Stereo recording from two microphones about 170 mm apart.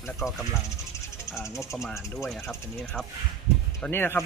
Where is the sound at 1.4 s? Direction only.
15° left (ahead or behind).